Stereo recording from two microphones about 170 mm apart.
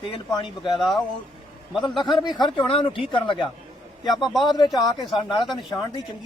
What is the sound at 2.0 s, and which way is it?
Speech, 25° left (ahead or behind).